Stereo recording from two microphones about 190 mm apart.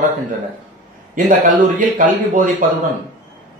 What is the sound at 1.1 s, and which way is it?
A man's voice, 45° right (ahead or behind).